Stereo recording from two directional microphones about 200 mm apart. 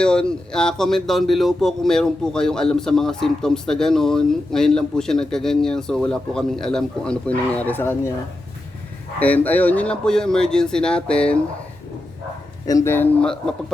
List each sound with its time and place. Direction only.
0.0 s speech: 5° left (ahead or behind)
9.1 s speech: 10° left (ahead or behind)
12.6 s speech: 15° left (ahead or behind)